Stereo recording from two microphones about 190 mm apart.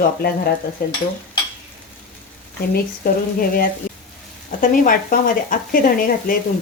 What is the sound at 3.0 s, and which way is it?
Speech, 50° left (ahead or behind).